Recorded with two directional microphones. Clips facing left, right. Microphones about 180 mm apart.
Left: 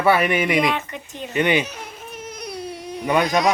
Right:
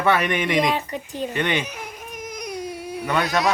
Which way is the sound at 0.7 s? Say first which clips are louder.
Right 2 dB; 35° right (ahead or behind).